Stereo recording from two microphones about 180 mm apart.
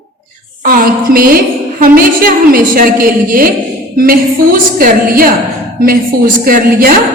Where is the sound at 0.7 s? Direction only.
55° right (ahead or behind).